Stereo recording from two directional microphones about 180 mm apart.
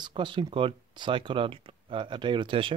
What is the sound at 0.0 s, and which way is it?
Speech, 25° right (ahead or behind).